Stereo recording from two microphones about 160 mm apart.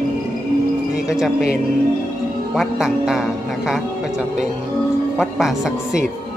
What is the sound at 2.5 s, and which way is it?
A man's voice, centre (ahead or behind).